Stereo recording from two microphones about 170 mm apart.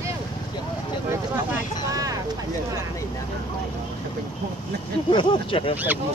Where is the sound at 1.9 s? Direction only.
20° right (ahead or behind).